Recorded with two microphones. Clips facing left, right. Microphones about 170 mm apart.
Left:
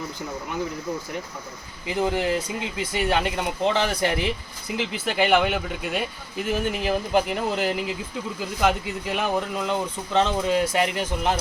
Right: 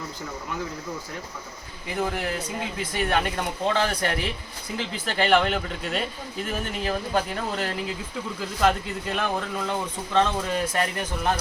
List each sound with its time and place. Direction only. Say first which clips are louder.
2.0 s speech: left 4 dB; 20° left (ahead or behind)